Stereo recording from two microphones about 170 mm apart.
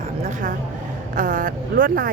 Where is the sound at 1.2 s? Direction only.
55° right (ahead or behind).